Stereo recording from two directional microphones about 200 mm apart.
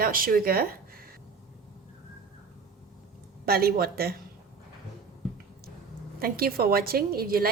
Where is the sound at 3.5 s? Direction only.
50° right (ahead or behind).